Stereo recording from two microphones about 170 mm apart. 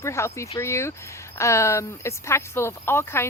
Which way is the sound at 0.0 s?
15° left (ahead or behind).